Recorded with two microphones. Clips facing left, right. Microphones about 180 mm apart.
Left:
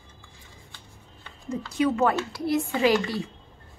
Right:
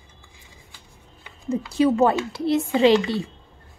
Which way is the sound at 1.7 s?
30° right (ahead or behind).